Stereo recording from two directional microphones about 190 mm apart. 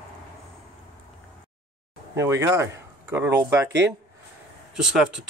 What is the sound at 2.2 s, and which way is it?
Speech, 15° right (ahead or behind).